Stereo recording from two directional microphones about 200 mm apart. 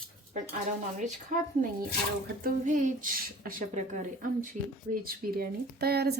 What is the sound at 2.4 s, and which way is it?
Speech, 40° right (ahead or behind).